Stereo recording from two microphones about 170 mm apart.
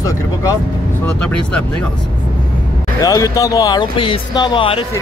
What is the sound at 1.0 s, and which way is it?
Speech, 5° left (ahead or behind).